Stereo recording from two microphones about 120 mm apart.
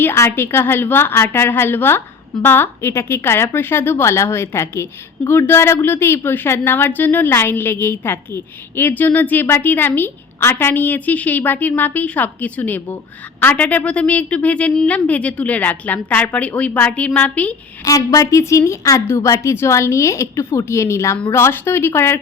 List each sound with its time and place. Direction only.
0.0 s a woman's voice: 20° left (ahead or behind)
17.8 s a woman's voice: 30° left (ahead or behind)